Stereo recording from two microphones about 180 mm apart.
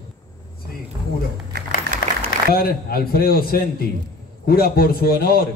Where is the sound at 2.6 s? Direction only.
55° left (ahead or behind).